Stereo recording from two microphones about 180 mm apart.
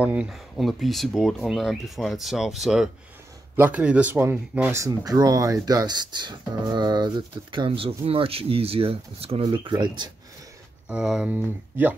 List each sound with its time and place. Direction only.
0.0 s speech: 5° right (ahead or behind); by 10.0 s 25° right (ahead or behind)
10.9 s speech: 5° right (ahead or behind)